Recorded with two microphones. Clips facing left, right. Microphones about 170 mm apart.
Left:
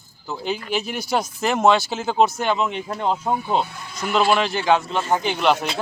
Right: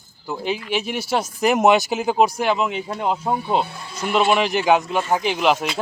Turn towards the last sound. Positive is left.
turn(degrees=-5)  # may be behind; listen again after turning